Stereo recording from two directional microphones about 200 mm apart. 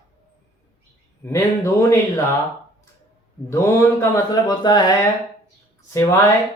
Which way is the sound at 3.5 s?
15° left (ahead or behind).